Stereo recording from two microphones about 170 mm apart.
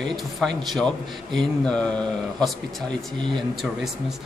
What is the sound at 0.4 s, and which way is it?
Speech, centre (ahead or behind).